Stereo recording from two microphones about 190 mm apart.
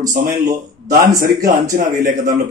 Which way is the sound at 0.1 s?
40° right (ahead or behind).